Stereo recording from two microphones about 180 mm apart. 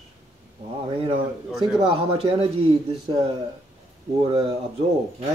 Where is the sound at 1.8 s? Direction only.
30° right (ahead or behind).